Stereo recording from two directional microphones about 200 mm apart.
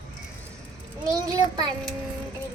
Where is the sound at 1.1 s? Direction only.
20° right (ahead or behind).